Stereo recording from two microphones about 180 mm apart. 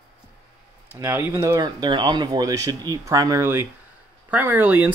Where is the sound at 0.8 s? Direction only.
10° right (ahead or behind).